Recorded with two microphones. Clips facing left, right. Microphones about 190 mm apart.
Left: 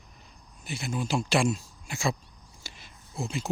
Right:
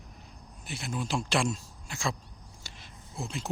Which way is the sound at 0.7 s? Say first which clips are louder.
Left 3 dB; centre (ahead or behind).